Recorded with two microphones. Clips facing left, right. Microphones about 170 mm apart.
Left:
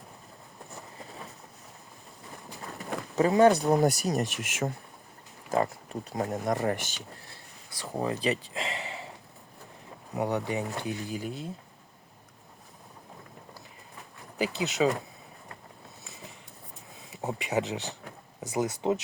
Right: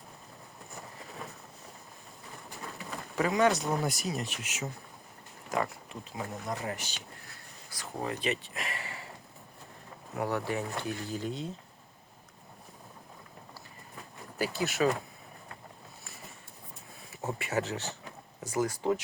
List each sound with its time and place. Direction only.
3.2 s speech: 30° left (ahead or behind); by 4.7 s 50° left (ahead or behind)
5.5 s speech: 30° left (ahead or behind); by 6.9 s 55° left (ahead or behind)
7.8 s speech: 30° left (ahead or behind)
10.2 s speech: 20° left (ahead or behind)
14.3 s speech: 20° left (ahead or behind)
17.1 s speech: 20° left (ahead or behind)